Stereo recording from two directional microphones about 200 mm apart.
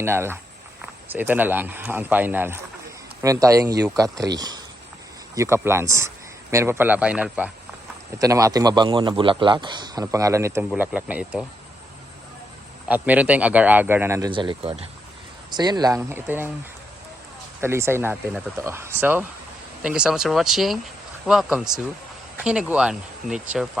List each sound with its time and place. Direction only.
0.0 s a man's voice: 10° right (ahead or behind)
12.9 s speech: 5° right (ahead or behind)
17.6 s speech: 10° right (ahead or behind)